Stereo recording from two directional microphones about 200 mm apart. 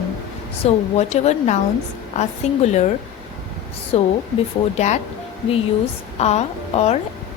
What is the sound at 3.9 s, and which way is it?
Speech, 30° left (ahead or behind).